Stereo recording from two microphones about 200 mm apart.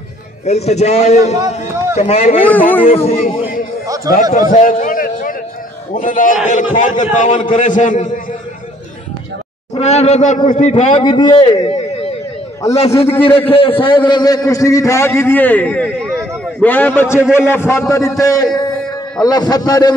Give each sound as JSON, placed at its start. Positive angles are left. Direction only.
{"t": 0.5, "sound": "a man's voice", "side_deg": 35}
{"t": 2.4, "sound": "a man's voice", "side_deg": 10}
{"t": 3.1, "sound": "speech", "side_deg": 40}
{"t": 3.8, "sound": "chatter", "side_deg": -15}
{"t": 4.1, "sound": "a man's voice", "side_deg": 40}
{"t": 7.3, "sound": "a man's voice", "side_deg": 25}
{"t": 7.6, "sound": "a man's voice", "side_deg": 40}
{"t": 9.8, "sound": "a man's voice", "side_deg": 35}
{"t": 11.1, "sound": "a man's voice", "side_deg": 20}
{"t": 12.9, "sound": "a man's voice", "side_deg": 10}
{"t": 13.5, "sound": "a man's voice", "side_deg": 25}